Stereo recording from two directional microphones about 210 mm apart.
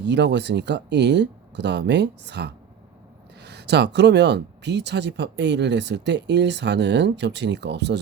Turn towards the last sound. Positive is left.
turn(degrees=-55)  # may be behind; listen again after turning